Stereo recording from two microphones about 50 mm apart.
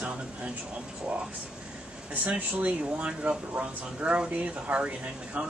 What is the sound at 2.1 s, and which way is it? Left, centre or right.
Speech, right.